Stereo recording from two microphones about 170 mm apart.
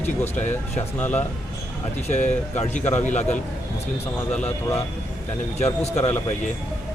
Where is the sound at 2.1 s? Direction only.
40° left (ahead or behind).